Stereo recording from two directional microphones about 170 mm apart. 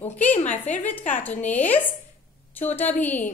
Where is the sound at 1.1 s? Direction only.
10° left (ahead or behind).